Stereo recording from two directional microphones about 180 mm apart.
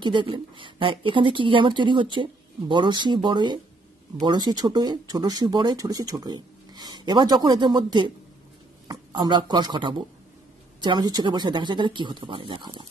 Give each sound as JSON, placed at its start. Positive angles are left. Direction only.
{"t": 0.0, "sound": "speech", "side_deg": -25}
{"t": 9.1, "sound": "speech", "side_deg": -25}